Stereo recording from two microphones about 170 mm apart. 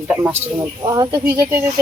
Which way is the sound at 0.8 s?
20° right (ahead or behind).